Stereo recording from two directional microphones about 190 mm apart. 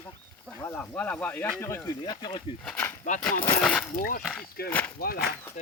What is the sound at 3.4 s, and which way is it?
Speech, 5° left (ahead or behind).